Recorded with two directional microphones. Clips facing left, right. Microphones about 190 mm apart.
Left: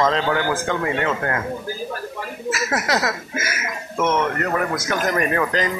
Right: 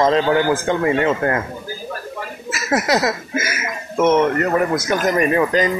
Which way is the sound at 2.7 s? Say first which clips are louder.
Right 7 dB; 20° right (ahead or behind).